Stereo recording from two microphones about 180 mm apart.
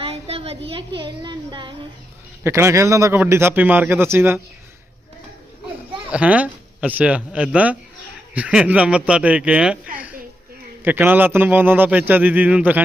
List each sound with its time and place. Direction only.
0.0 s a woman's voice: 30° right (ahead or behind)
2.4 s a man's voice: 15° right (ahead or behind)
6.1 s a man's voice: 5° right (ahead or behind)